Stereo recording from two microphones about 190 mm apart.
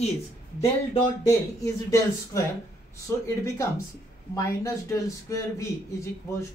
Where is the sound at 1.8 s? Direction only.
15° left (ahead or behind).